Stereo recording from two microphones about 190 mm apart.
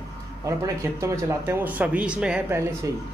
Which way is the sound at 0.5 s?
15° right (ahead or behind).